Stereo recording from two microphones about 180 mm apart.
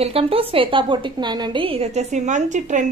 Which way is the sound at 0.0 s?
30° right (ahead or behind).